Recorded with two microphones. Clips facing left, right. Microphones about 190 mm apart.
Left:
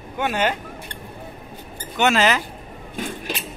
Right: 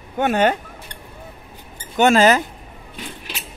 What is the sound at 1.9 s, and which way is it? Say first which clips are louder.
Speech: right 5 dB; 45° right (ahead or behind).